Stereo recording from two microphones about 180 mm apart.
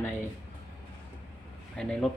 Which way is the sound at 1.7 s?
5° left (ahead or behind).